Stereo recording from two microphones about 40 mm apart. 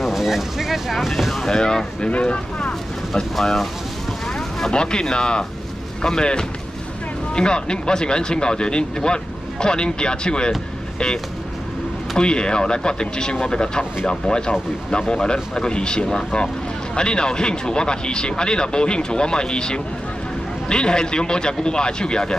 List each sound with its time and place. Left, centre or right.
0.0 s speech: centre
1.3 s speech: centre
2.0 s speech: left
3.3 s speech: centre
4.7 s speech: left
12.2 s speech: left